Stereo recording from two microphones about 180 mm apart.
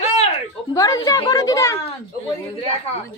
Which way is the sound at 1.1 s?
20° left (ahead or behind).